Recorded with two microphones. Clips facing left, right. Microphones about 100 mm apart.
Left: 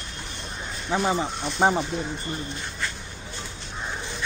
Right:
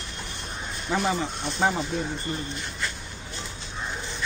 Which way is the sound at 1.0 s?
30° left (ahead or behind).